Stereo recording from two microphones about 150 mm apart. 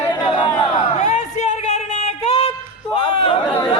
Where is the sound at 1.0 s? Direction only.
50° left (ahead or behind).